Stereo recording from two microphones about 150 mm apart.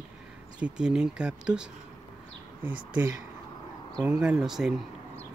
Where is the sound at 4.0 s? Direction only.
10° right (ahead or behind).